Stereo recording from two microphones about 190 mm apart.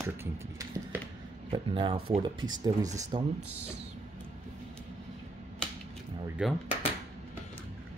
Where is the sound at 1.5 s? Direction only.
25° right (ahead or behind).